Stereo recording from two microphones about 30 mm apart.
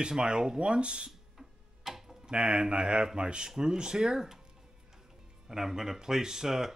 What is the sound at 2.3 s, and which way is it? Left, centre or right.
Speech, right.